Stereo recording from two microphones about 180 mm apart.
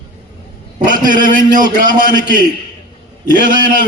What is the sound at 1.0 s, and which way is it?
Speech, 50° right (ahead or behind).